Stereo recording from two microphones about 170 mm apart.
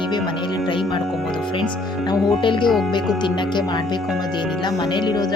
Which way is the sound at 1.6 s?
Centre (ahead or behind).